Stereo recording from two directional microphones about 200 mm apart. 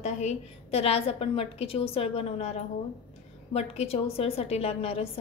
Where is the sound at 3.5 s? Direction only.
30° left (ahead or behind).